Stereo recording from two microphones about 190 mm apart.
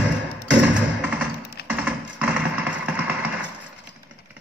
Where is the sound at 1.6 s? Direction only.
60° left (ahead or behind).